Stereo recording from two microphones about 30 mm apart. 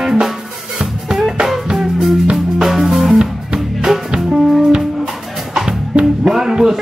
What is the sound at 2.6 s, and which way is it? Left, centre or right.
Music, centre.